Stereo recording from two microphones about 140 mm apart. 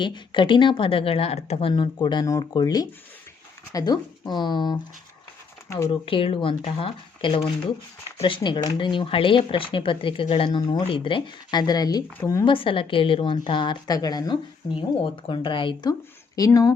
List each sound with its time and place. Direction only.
0.0 s speech: 35° left (ahead or behind)
5.9 s speech: 40° left (ahead or behind)
12.5 s speech: 40° left (ahead or behind)